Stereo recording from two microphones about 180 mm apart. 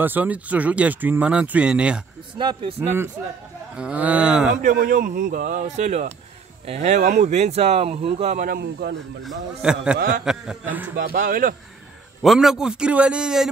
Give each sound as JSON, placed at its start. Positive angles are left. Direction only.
{"t": 0.0, "sound": "speech", "side_deg": -10}
{"t": 2.3, "sound": "a man's voice", "side_deg": -30}
{"t": 2.8, "sound": "a man's voice", "side_deg": -15}
{"t": 4.6, "sound": "speech", "side_deg": -50}
{"t": 8.5, "sound": "speech", "side_deg": -60}
{"t": 9.2, "sound": "a man's voice", "side_deg": 0}
{"t": 9.9, "sound": "speech", "side_deg": -55}
{"t": 10.2, "sound": "speech", "side_deg": -5}
{"t": 11.1, "sound": "speech", "side_deg": -50}
{"t": 12.2, "sound": "a man's voice", "side_deg": 0}